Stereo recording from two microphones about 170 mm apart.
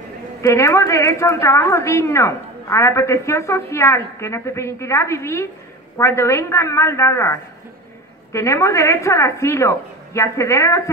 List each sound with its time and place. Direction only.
0.4 s a woman's voice: 15° left (ahead or behind)